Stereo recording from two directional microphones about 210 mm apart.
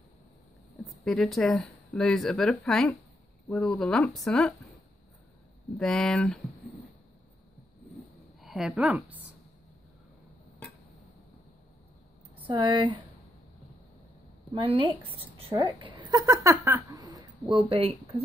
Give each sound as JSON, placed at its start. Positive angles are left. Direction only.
{"t": 0.8, "sound": "speech", "side_deg": 0}
{"t": 5.8, "sound": "speech", "side_deg": 0}
{"t": 8.4, "sound": "a woman's voice", "side_deg": 0}
{"t": 12.4, "sound": "speech", "side_deg": -25}
{"t": 14.5, "sound": "speech", "side_deg": -25}